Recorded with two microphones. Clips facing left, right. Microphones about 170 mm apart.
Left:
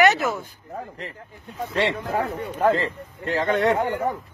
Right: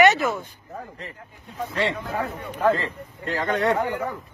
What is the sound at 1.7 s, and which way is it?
Speech, 30° left (ahead or behind).